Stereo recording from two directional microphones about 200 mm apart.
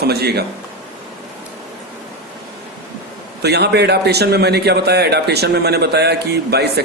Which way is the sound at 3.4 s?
55° right (ahead or behind).